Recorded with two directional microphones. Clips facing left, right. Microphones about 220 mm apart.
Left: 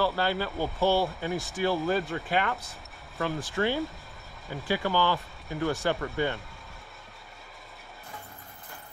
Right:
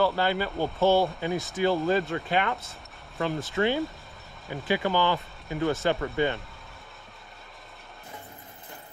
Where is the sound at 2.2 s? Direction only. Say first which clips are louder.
Right 2 dB; 20° right (ahead or behind).